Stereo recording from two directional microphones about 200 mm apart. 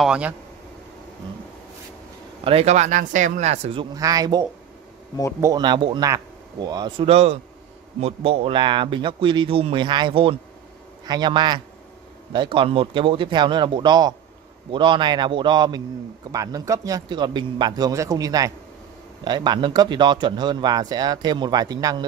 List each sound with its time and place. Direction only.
0.0 s speech: 5° right (ahead or behind)
2.4 s speech: 30° right (ahead or behind)
3.9 s speech: 15° right (ahead or behind)